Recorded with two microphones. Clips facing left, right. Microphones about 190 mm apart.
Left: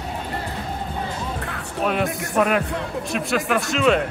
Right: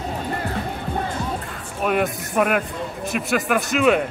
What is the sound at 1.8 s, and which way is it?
A man's voice, 5° right (ahead or behind).